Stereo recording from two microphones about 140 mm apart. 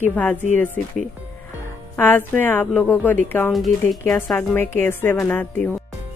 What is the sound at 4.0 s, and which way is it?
Speech, 15° left (ahead or behind).